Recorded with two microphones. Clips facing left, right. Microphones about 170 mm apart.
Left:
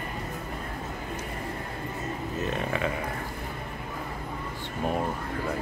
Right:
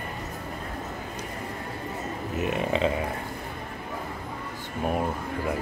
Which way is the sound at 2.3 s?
15° right (ahead or behind).